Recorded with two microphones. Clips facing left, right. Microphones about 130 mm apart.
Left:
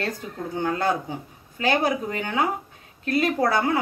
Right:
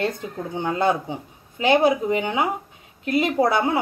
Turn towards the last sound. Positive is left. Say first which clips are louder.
# right 2 dB
turn(degrees=-20)  # may be behind; listen again after turning